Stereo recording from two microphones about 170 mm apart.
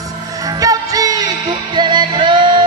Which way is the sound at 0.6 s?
20° right (ahead or behind).